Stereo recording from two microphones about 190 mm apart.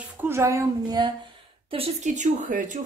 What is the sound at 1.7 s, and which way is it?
Speech, 35° right (ahead or behind).